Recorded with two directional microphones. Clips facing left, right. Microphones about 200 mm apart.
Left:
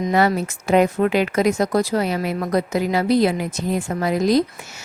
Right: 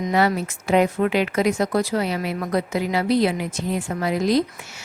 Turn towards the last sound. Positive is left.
turn(degrees=40)  # may be behind; listen again after turning